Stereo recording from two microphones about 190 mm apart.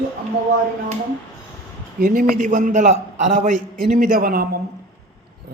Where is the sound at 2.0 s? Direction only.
45° right (ahead or behind).